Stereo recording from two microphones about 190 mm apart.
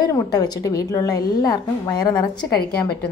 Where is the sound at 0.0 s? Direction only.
20° left (ahead or behind).